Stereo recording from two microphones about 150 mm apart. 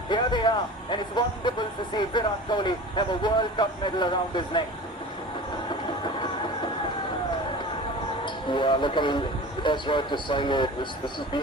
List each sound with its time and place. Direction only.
0.1 s a man's voice: 30° left (ahead or behind)
5.6 s train: 30° left (ahead or behind)
8.2 s a man's voice: 30° left (ahead or behind)